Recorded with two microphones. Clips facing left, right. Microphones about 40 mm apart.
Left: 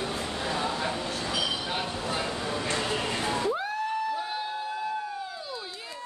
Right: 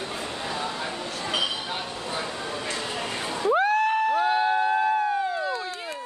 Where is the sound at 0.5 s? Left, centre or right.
Centre.